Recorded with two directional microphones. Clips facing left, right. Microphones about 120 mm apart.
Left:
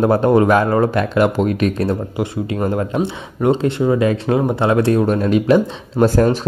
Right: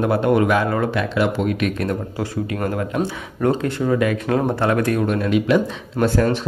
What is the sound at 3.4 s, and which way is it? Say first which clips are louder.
Speech: left 4 dB; 25° left (ahead or behind).